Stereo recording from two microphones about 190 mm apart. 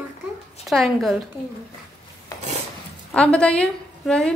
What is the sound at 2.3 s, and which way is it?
Filing, 20° left (ahead or behind).